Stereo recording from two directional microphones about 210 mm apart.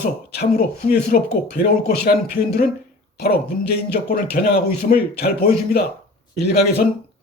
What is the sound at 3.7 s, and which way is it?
Speech, 50° left (ahead or behind).